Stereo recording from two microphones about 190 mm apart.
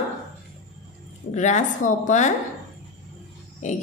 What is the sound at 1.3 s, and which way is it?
A woman's voice, 40° left (ahead or behind).